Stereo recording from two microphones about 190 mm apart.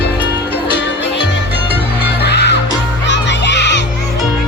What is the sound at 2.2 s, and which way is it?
Music, 60° left (ahead or behind).